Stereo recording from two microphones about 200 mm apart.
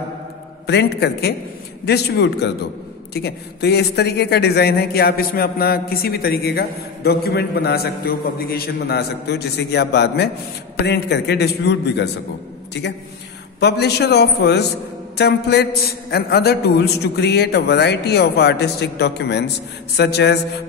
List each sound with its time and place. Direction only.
0.7 s a man's voice: 55° left (ahead or behind)
13.6 s a man's voice: 55° left (ahead or behind)